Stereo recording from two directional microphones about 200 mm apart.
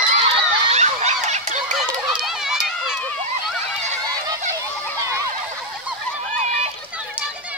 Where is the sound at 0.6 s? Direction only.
35° right (ahead or behind).